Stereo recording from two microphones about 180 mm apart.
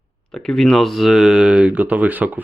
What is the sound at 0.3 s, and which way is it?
Speech, centre (ahead or behind).